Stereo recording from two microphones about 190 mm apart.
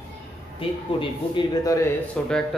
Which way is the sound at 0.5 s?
25° left (ahead or behind).